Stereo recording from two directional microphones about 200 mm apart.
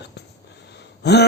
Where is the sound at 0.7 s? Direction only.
55° left (ahead or behind).